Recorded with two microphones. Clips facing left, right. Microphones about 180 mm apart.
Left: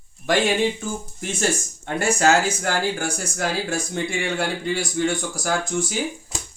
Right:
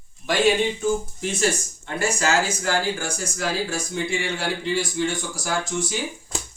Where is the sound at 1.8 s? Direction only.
55° left (ahead or behind).